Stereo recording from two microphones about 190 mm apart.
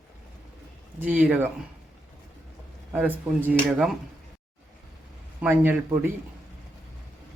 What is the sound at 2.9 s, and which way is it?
Speech, 10° right (ahead or behind).